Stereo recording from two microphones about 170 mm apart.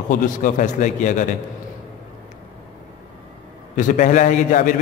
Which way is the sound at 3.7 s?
50° left (ahead or behind).